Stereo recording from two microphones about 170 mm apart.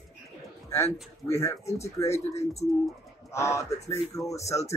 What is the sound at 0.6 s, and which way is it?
A man's voice, 15° left (ahead or behind).